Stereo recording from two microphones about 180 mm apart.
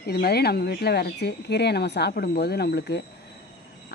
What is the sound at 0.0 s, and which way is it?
Speech, 60° left (ahead or behind).